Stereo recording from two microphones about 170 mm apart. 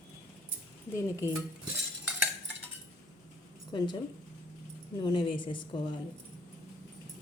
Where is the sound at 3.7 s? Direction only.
25° left (ahead or behind).